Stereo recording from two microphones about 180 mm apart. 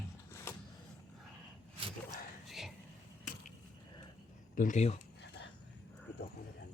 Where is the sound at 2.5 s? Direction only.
Centre (ahead or behind).